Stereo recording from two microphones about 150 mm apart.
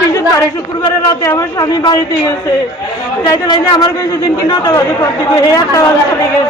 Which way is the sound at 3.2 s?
30° left (ahead or behind).